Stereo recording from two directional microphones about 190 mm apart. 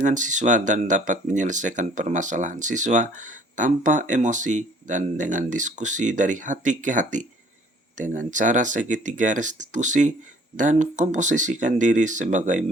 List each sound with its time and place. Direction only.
0.0 s speech: 40° right (ahead or behind)